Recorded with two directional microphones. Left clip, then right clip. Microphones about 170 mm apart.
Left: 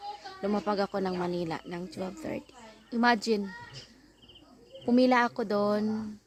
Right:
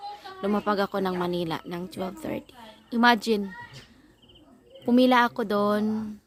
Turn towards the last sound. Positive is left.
turn(degrees=-15)  # may be behind; listen again after turning